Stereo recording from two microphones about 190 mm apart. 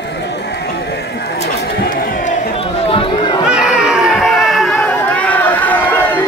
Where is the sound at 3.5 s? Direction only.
5° right (ahead or behind).